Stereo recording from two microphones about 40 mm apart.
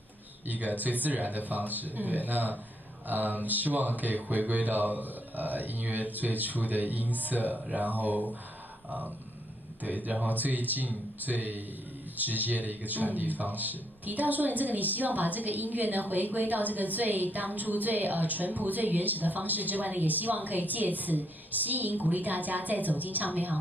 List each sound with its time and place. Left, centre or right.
0.5 s speech: right
9.8 s speech: right